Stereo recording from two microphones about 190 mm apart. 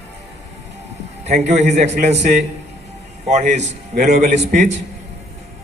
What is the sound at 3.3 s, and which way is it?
A man's voice, 35° right (ahead or behind).